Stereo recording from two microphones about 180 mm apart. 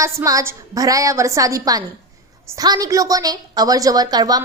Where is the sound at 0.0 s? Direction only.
15° right (ahead or behind).